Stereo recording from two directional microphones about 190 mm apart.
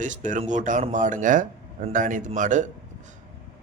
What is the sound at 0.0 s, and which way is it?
A man's voice, 40° right (ahead or behind).